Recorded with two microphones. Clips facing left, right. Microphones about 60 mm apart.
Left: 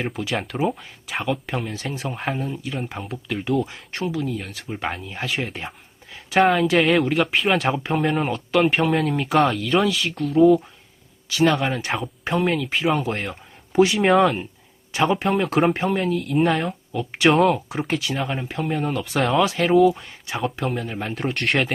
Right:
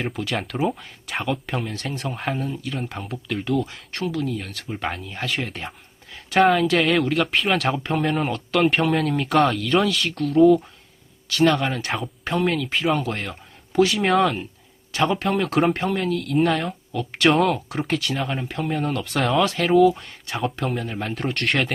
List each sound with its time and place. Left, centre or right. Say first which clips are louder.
0.0 s speech: left 1 dB; centre